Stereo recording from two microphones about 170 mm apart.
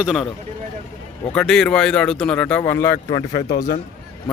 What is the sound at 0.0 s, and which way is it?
Speech, 5° right (ahead or behind).